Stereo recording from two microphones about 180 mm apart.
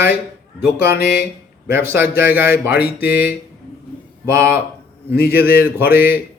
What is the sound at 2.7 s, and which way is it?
Speech, 60° left (ahead or behind).